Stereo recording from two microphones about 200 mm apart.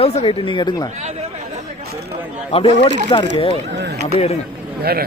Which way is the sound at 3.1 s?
25° left (ahead or behind).